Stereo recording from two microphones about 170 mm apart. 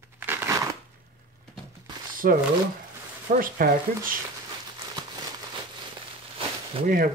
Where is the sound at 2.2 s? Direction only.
60° right (ahead or behind).